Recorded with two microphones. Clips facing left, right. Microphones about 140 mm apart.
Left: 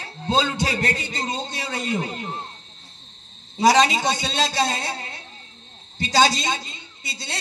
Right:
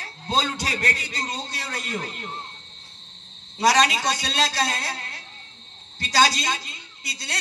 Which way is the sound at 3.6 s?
25° left (ahead or behind).